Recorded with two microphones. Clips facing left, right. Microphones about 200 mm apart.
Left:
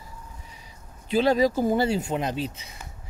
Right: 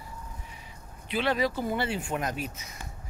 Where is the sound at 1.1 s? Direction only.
40° left (ahead or behind).